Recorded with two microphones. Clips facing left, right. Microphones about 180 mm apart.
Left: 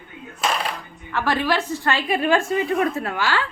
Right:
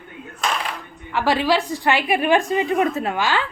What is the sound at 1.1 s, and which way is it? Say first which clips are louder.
A woman's voice: right 3 dB; 15° right (ahead or behind).